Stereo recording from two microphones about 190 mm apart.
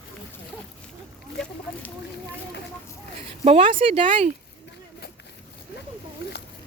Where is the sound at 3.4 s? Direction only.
30° right (ahead or behind).